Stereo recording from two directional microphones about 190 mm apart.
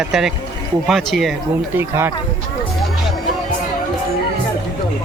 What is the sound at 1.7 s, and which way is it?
Speech, 10° right (ahead or behind).